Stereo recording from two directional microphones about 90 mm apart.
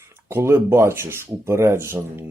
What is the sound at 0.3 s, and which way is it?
Speech, 25° right (ahead or behind).